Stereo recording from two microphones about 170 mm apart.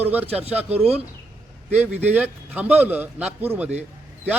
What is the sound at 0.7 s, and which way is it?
Speech, 35° right (ahead or behind).